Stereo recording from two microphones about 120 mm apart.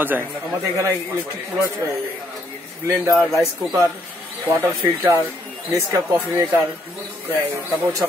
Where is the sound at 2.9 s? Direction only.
25° right (ahead or behind).